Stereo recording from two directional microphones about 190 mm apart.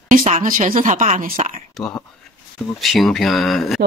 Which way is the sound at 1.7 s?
Centre (ahead or behind).